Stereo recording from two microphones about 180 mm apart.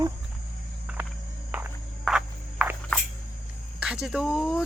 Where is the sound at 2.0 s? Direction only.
5° right (ahead or behind).